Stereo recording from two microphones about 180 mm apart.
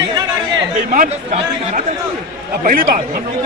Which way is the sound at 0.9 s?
45° right (ahead or behind).